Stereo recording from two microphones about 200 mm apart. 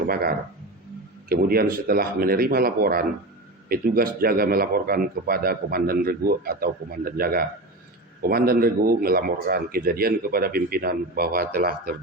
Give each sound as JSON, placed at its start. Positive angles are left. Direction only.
{"t": 0.1, "sound": "speech", "side_deg": -50}